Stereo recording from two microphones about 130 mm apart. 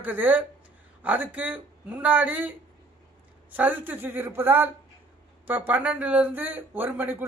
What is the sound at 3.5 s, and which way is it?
Speech, 10° right (ahead or behind).